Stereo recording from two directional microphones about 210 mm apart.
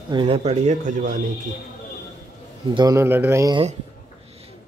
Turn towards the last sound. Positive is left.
turn(degrees=-15)  # may be behind; listen again after turning